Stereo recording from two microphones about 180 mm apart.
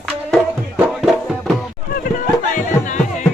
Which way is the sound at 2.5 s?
45° left (ahead or behind).